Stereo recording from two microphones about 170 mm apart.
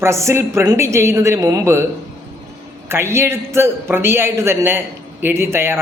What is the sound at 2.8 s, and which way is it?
A man's voice, 15° right (ahead or behind).